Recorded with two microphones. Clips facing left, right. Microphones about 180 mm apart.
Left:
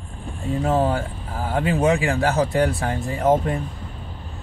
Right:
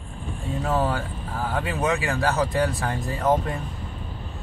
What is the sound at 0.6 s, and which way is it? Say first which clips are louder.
Speech: left 4 dB; 25° left (ahead or behind).